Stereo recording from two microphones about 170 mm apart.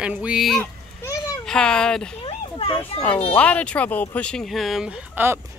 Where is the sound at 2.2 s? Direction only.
35° left (ahead or behind).